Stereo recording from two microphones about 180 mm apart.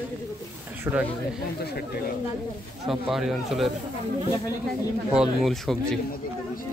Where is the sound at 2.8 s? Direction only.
Centre (ahead or behind).